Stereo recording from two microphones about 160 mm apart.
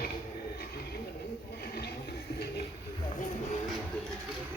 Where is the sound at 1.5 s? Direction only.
85° left.